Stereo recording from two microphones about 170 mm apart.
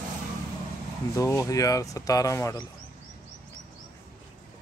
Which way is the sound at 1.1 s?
20° left (ahead or behind).